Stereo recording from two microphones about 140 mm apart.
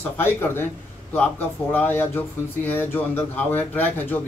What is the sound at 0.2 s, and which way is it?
Speech, 15° left (ahead or behind).